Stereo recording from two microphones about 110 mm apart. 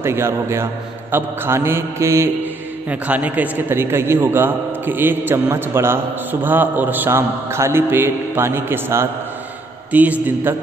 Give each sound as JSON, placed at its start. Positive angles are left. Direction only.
{"t": 0.0, "sound": "a man's voice", "side_deg": -25}
{"t": 2.9, "sound": "a man's voice", "side_deg": -15}